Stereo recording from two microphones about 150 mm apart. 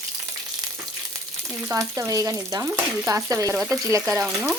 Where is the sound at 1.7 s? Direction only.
20° right (ahead or behind).